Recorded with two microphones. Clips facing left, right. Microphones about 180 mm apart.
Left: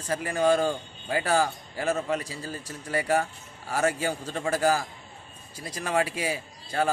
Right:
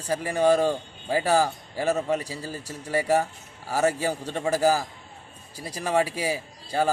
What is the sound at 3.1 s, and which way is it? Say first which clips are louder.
A man's voice: right 2 dB; 5° right (ahead or behind).